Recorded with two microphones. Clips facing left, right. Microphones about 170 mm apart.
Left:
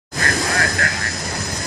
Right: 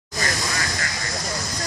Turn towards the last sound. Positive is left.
turn(degrees=60)  # may be behind; listen again after turning